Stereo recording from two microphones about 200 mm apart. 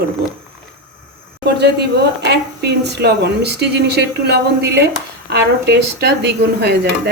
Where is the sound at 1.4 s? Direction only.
55° right (ahead or behind).